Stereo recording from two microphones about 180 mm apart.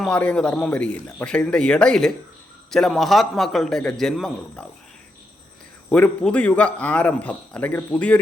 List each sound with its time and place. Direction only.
0.0 s a man's voice: 5° left (ahead or behind)
5.9 s a man's voice: 5° left (ahead or behind)